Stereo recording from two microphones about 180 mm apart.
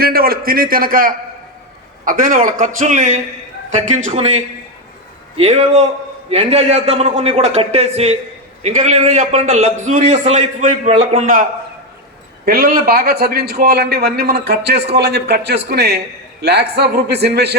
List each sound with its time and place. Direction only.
0.0 s a man's voice: 55° right (ahead or behind)
12.5 s a man's voice: 50° right (ahead or behind)